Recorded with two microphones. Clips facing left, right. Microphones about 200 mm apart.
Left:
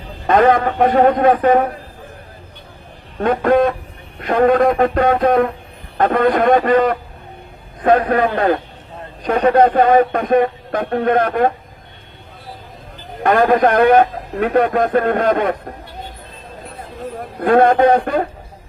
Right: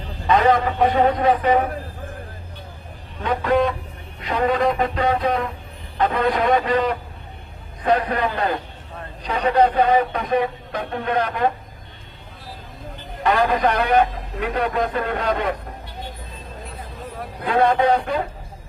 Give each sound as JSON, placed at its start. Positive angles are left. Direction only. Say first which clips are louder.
{"t": 0.3, "sound": "speech", "louder": "left 4 dB", "side_deg": 50}
{"t": 3.2, "sound": "speech", "louder": "left 6 dB", "side_deg": 50}
{"t": 13.2, "sound": "speech", "louder": "left 6 dB", "side_deg": 50}
{"t": 17.4, "sound": "speech", "louder": "left 6 dB", "side_deg": 50}